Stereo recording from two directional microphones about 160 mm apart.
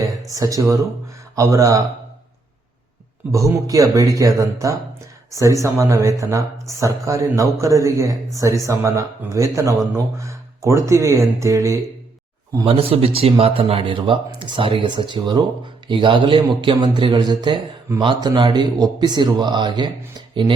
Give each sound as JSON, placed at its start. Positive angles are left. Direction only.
{"t": 0.3, "sound": "speech", "side_deg": -20}
{"t": 3.3, "sound": "speech", "side_deg": -20}
{"t": 12.6, "sound": "speech", "side_deg": -35}